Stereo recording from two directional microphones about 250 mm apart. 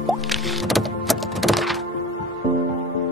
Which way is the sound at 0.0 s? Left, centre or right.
Centre.